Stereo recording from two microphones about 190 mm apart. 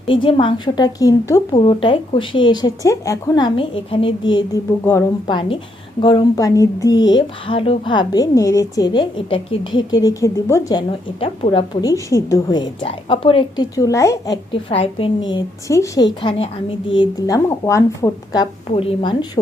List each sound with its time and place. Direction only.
0.1 s speech: 25° left (ahead or behind)
4.8 s a woman's voice: 10° left (ahead or behind)
5.3 s speech: 25° left (ahead or behind)
14.5 s speech: 30° left (ahead or behind)
15.3 s a woman's voice: 20° left (ahead or behind)
18.7 s speech: 30° left (ahead or behind)